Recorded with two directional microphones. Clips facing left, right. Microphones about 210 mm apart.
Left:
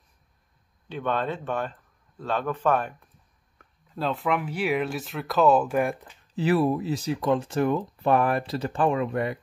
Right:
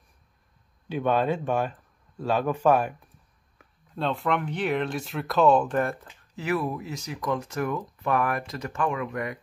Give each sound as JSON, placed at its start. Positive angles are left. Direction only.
{"t": 0.8, "sound": "speech", "side_deg": -10}
{"t": 3.5, "sound": "speech", "side_deg": 0}
{"t": 6.3, "sound": "speech", "side_deg": 30}